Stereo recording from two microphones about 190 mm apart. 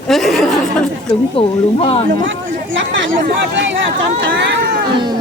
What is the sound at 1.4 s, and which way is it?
Speech, 30° left (ahead or behind).